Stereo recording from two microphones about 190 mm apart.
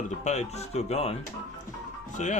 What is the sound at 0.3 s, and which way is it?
Speech, 35° left (ahead or behind).